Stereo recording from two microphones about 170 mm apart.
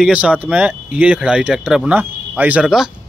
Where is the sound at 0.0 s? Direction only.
5° right (ahead or behind).